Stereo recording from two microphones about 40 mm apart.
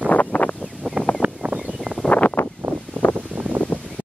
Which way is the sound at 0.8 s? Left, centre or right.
Right.